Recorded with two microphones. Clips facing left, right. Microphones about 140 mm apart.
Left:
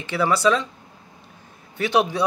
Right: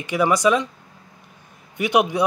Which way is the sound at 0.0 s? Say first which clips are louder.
Right 2 dB; 15° right (ahead or behind).